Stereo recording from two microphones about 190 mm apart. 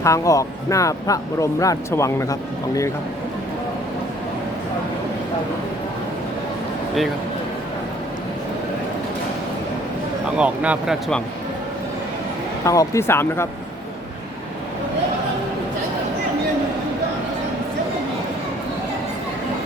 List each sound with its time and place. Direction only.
0.0 s speech: 15° left (ahead or behind)
10.2 s speech: 5° right (ahead or behind)
12.6 s speech: 15° left (ahead or behind)